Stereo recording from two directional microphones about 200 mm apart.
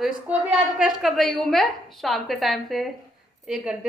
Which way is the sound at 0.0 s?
5° right (ahead or behind).